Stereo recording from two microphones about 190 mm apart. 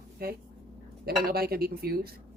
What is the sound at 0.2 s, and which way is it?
A woman's voice, 55° right (ahead or behind).